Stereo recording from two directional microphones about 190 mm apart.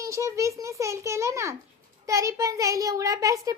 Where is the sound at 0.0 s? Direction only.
15° right (ahead or behind).